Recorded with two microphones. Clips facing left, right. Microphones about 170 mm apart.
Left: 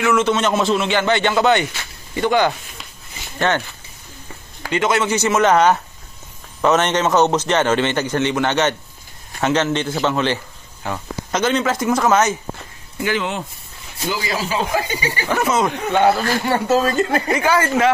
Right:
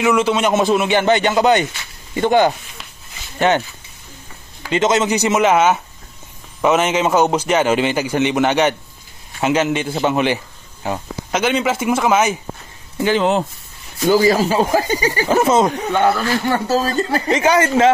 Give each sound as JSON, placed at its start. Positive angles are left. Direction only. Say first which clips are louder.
{"t": 0.0, "sound": "a man's voice", "louder": "right 1 dB", "side_deg": -15}
{"t": 4.6, "sound": "a man's voice", "louder": "right 2 dB", "side_deg": -20}
{"t": 12.9, "sound": "speech", "louder": "right 6 dB", "side_deg": -30}
{"t": 15.2, "sound": "speech", "louder": "right 4 dB", "side_deg": -25}
{"t": 16.6, "sound": "speech", "louder": "left 1 dB", "side_deg": -35}
{"t": 17.3, "sound": "speech", "louder": "right 3 dB", "side_deg": -20}